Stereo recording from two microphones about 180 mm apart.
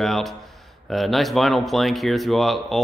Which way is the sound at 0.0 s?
Centre (ahead or behind).